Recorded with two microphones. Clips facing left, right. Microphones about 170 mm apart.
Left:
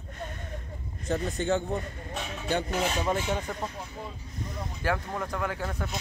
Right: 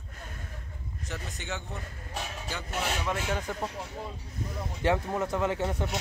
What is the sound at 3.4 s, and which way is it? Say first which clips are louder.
Speech: even; centre (ahead or behind).